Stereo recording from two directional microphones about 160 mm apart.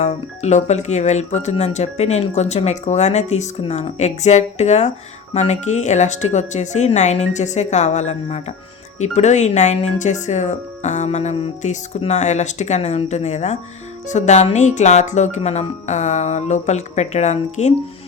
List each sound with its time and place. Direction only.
0.0 s speech: 45° left (ahead or behind)